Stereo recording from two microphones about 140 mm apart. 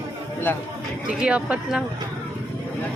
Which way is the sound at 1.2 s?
5° right (ahead or behind).